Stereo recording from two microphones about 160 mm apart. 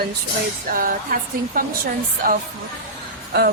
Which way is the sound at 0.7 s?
60° right (ahead or behind).